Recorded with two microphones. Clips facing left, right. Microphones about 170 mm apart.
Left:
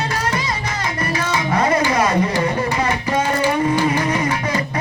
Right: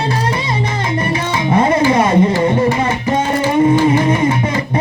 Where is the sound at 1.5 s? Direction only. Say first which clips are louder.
Right 6 dB; 25° right (ahead or behind).